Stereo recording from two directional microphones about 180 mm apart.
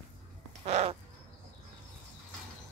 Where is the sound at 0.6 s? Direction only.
35° right (ahead or behind).